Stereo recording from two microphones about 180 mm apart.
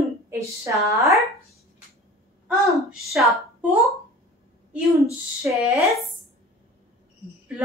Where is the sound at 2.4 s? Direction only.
Centre (ahead or behind).